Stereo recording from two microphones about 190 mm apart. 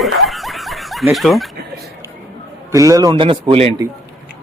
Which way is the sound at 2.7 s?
15° right (ahead or behind).